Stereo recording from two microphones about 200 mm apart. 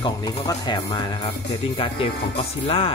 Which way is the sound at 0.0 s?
20° left (ahead or behind).